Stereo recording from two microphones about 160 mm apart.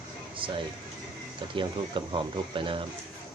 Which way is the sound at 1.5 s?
30° right (ahead or behind).